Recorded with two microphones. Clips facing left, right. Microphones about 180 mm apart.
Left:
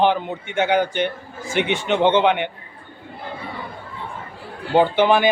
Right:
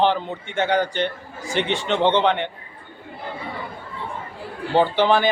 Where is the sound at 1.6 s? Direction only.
15° left (ahead or behind).